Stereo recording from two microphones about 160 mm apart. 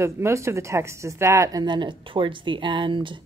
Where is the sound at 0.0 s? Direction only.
15° right (ahead or behind).